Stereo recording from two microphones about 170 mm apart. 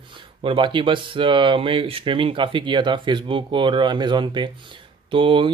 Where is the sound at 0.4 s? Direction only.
30° right (ahead or behind).